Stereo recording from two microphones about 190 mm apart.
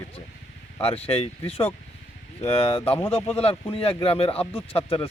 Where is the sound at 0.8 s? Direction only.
30° left (ahead or behind).